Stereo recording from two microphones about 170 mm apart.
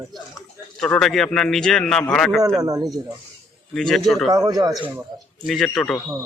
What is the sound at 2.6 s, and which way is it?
Speech, 20° right (ahead or behind).